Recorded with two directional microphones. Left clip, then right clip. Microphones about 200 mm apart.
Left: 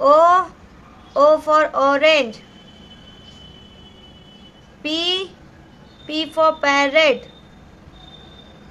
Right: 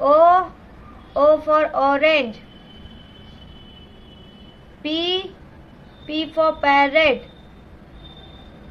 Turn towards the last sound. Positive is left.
turn(degrees=20)  # may be behind; listen again after turning